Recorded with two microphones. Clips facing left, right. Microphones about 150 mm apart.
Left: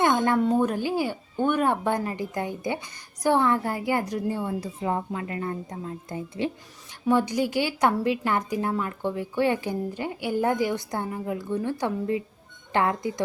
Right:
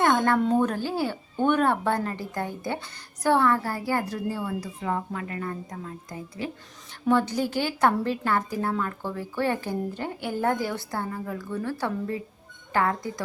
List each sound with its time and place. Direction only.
0.0 s a sound: 15° left (ahead or behind)
0.3 s speech: 5° left (ahead or behind); by 6.5 s 25° left (ahead or behind)
7.1 s speech: 15° left (ahead or behind)